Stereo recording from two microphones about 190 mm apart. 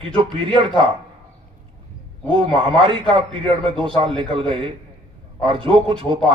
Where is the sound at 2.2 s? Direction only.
25° right (ahead or behind).